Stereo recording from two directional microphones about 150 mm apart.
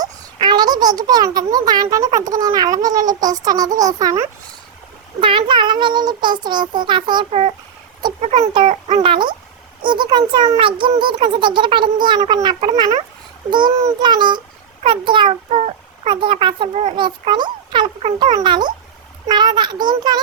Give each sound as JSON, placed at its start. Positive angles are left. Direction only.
{"t": 0.0, "sound": "a child's voice", "side_deg": -30}
{"t": 5.2, "sound": "a child's voice", "side_deg": -35}
{"t": 7.3, "sound": "a child's voice", "side_deg": -45}
{"t": 8.4, "sound": "a child's voice", "side_deg": -30}
{"t": 8.7, "sound": "a child's voice", "side_deg": -50}
{"t": 9.0, "sound": "a child's voice", "side_deg": -30}